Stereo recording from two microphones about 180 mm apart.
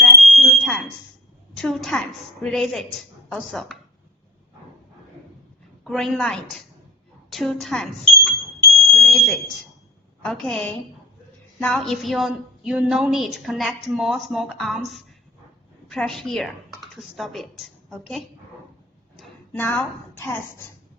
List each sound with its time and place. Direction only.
0.0 s smoke detector: centre (ahead or behind)
1.5 s a woman's voice: centre (ahead or behind)
5.8 s a woman's voice: centre (ahead or behind)
8.9 s smoke detector: centre (ahead or behind)
10.2 s a woman's voice: centre (ahead or behind)
19.5 s speech: 10° left (ahead or behind)